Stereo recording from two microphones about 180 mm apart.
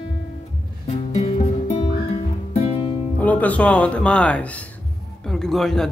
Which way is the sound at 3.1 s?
10° left (ahead or behind).